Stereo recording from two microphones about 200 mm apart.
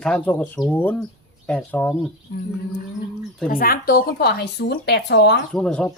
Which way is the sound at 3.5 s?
45° left (ahead or behind).